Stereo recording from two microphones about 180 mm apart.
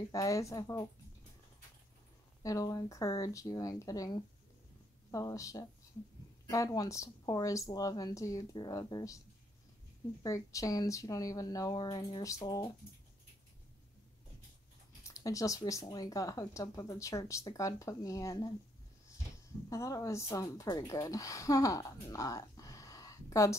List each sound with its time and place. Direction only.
0.1 s speech: 20° left (ahead or behind)
2.4 s speech: 20° left (ahead or behind)
10.2 s speech: 20° left (ahead or behind)
15.0 s speech: 20° left (ahead or behind)
19.7 s a woman's voice: 15° left (ahead or behind)